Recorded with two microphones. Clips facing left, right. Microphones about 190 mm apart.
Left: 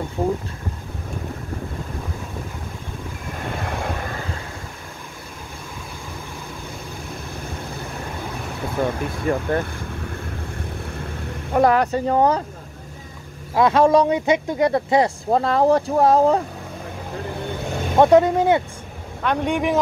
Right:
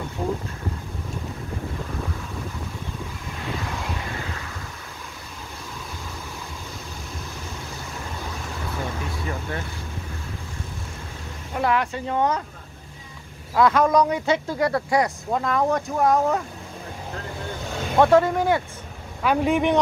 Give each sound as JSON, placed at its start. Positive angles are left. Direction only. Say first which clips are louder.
{"t": 0.2, "sound": "a sound", "louder": "left 5 dB", "side_deg": 20}
{"t": 3.4, "sound": "vehicle", "louder": "left 3 dB", "side_deg": 55}
{"t": 9.3, "sound": "speech", "louder": "left 13 dB", "side_deg": 55}
{"t": 11.5, "sound": "speech", "louder": "left 7 dB", "side_deg": 40}
{"t": 13.6, "sound": "speech", "louder": "left 3 dB", "side_deg": 25}
{"t": 17.9, "sound": "speech", "louder": "left 3 dB", "side_deg": 20}
{"t": 19.2, "sound": "a man's voice", "louder": "right 1 dB", "side_deg": -5}